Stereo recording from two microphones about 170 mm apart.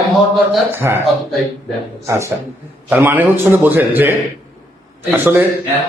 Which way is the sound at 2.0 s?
15° right (ahead or behind).